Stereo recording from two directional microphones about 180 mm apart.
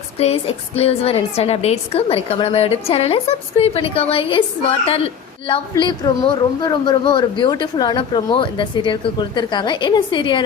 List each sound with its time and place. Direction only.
0.2 s a woman's voice: 35° left (ahead or behind)